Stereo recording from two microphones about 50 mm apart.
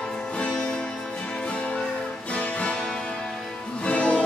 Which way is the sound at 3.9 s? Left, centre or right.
Left.